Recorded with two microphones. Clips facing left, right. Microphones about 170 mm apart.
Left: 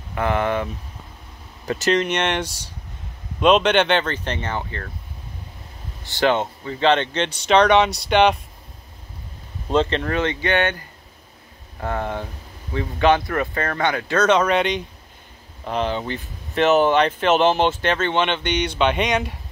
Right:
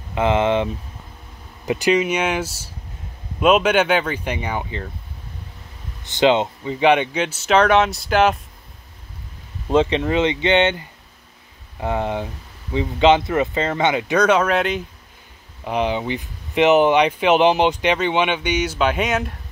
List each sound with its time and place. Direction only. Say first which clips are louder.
0.1 s speech: right 4 dB; 20° right (ahead or behind)
1.7 s speech: right 2 dB; 10° right (ahead or behind)
6.0 s speech: right 3 dB; 20° right (ahead or behind); by 8.4 s centre (ahead or behind)
9.7 s speech: right 3 dB; 10° right (ahead or behind)
11.8 s speech: right 3 dB; 15° right (ahead or behind)